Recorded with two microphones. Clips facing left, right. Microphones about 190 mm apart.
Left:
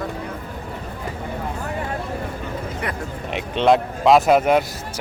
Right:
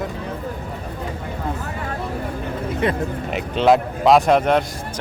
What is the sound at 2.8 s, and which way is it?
Speech, 25° right (ahead or behind).